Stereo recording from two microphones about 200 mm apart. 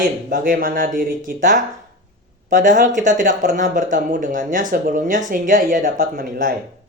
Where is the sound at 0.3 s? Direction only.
45° right (ahead or behind).